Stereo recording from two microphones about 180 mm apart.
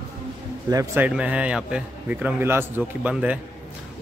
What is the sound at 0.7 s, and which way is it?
Speech, 20° right (ahead or behind).